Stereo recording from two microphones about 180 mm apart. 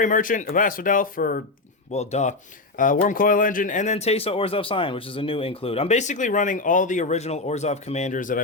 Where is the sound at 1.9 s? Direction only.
40° left (ahead or behind).